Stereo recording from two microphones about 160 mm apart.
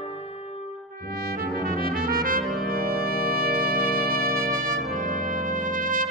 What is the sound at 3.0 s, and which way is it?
Music, 70° right (ahead or behind).